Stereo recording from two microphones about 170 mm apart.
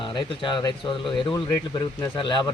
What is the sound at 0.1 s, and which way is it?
Speech, 30° left (ahead or behind).